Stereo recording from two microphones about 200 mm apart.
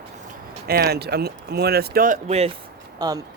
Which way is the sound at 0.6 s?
50° right (ahead or behind).